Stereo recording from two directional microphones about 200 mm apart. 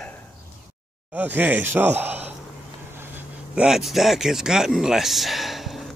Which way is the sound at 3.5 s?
5° right (ahead or behind).